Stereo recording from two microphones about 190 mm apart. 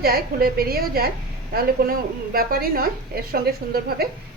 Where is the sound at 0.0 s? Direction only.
50° right (ahead or behind).